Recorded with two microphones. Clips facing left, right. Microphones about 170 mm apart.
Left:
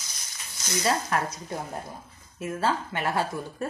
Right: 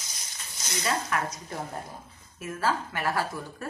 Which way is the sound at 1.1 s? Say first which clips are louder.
Left 2 dB; 35° left (ahead or behind).